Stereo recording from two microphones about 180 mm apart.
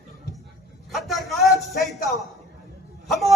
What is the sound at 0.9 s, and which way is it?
Speech, centre (ahead or behind).